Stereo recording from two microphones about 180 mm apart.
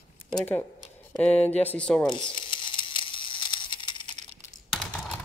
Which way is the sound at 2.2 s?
25° left (ahead or behind).